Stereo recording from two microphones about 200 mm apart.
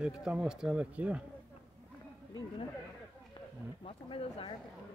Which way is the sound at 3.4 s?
25° left (ahead or behind).